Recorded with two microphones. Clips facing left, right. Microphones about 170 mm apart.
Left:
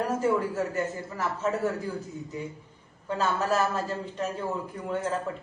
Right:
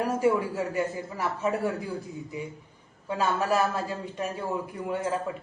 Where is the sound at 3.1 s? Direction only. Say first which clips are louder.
Right 1 dB; 10° right (ahead or behind).